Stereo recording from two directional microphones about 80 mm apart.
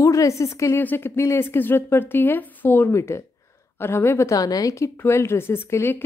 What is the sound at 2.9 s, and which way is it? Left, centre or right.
Speech, left.